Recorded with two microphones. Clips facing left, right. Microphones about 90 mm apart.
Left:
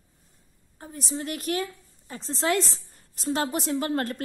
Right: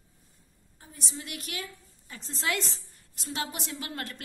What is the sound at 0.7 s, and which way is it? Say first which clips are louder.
A woman's voice: left 9 dB; 40° left (ahead or behind).